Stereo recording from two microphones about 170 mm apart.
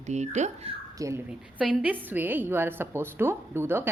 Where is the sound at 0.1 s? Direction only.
45° right (ahead or behind).